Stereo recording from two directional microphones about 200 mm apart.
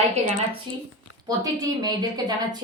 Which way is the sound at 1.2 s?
20° right (ahead or behind).